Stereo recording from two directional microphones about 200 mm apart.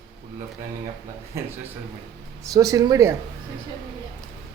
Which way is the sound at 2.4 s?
15° right (ahead or behind).